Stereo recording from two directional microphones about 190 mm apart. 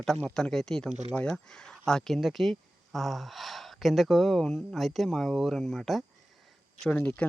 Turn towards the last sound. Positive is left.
turn(degrees=5)  # may be behind; listen again after turning